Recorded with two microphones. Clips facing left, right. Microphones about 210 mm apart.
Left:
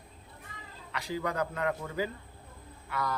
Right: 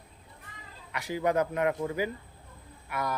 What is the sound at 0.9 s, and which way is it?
A man's voice, 15° right (ahead or behind).